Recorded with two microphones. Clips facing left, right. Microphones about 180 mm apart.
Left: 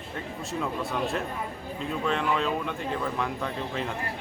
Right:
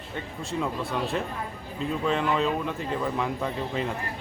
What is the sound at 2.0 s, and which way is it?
Speech, centre (ahead or behind).